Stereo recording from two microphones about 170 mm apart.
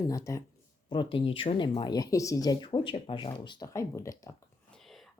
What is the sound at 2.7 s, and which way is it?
Speech, 30° left (ahead or behind).